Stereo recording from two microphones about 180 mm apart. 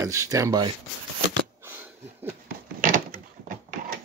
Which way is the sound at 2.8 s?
50° right (ahead or behind).